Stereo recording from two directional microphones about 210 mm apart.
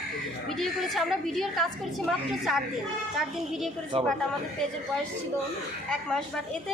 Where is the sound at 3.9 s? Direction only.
25° right (ahead or behind).